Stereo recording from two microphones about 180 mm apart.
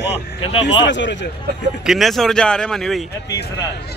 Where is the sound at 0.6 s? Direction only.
80° left.